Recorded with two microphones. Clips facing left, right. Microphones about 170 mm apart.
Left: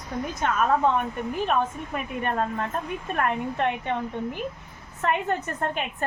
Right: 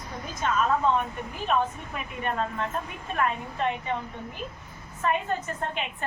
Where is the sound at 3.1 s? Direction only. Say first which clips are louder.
Left 2 dB; 65° left (ahead or behind).